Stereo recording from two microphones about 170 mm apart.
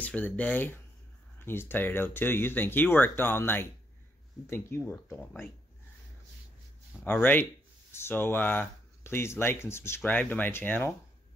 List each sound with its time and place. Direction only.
0.0 s speech: 10° left (ahead or behind)
7.1 s speech: 10° left (ahead or behind)